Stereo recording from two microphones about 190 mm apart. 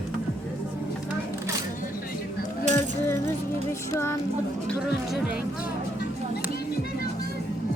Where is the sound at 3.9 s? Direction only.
15° left (ahead or behind).